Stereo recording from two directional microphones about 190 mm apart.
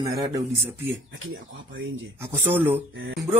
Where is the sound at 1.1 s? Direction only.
90° right.